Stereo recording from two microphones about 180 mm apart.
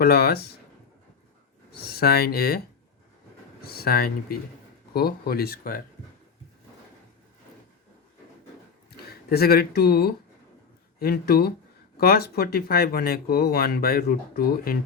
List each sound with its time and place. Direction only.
0.0 s speech: 60° left (ahead or behind)
1.7 s speech: 60° left (ahead or behind)
3.6 s speech: 60° left (ahead or behind)
9.0 s speech: 60° left (ahead or behind)